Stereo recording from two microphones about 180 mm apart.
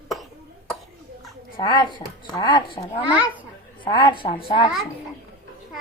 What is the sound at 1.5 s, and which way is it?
A woman's voice, 25° left (ahead or behind).